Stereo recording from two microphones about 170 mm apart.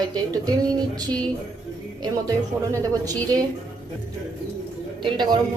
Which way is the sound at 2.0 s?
20° right (ahead or behind).